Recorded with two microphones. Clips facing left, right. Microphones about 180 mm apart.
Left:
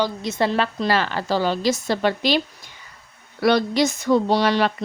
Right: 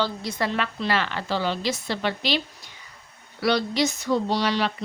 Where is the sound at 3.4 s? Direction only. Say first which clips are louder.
Left 5 dB; 50° left (ahead or behind).